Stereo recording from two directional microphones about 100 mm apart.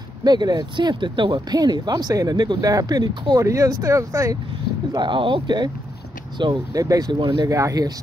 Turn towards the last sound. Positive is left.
turn(degrees=-40)  # may be behind; listen again after turning